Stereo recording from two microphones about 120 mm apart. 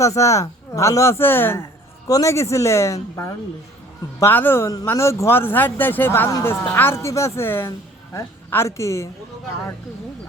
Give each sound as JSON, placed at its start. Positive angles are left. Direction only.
{"t": 0.0, "sound": "speech", "side_deg": 25}
{"t": 2.0, "sound": "a woman's voice", "side_deg": 30}